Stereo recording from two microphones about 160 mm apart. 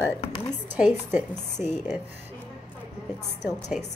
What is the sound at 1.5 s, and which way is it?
Speech, 45° left (ahead or behind).